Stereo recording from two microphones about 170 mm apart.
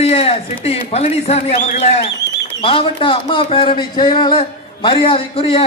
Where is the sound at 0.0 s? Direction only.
35° left (ahead or behind).